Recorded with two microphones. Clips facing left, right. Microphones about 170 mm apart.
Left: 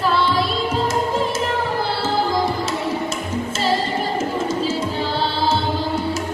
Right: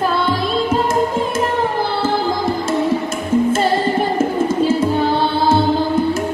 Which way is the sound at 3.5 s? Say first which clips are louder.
Right 5 dB; 55° right (ahead or behind).